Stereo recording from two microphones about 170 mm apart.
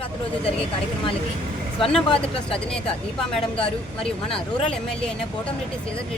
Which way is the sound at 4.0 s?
30° left (ahead or behind).